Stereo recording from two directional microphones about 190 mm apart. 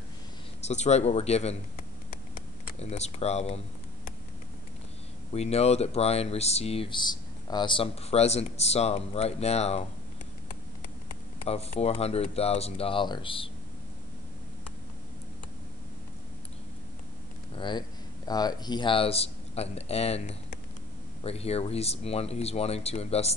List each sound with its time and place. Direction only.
0.7 s speech: 35° left (ahead or behind)
2.8 s speech: 35° left (ahead or behind)
5.3 s speech: 35° left (ahead or behind)
11.4 s speech: 30° left (ahead or behind)
17.6 s speech: 25° left (ahead or behind)